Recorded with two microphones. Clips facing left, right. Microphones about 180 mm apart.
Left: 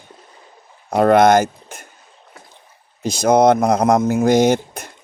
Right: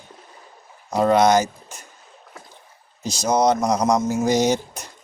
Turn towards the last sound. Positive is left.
turn(degrees=55)  # may be behind; listen again after turning